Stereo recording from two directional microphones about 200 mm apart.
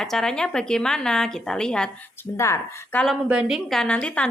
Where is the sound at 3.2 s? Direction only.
5° right (ahead or behind).